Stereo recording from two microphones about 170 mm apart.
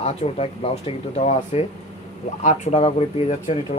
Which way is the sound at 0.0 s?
35° left (ahead or behind).